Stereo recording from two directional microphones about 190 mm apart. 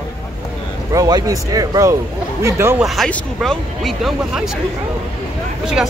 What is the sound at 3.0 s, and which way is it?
Speech, centre (ahead or behind).